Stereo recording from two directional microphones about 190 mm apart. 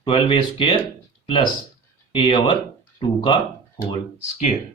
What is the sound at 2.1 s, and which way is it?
Speech, 30° left (ahead or behind).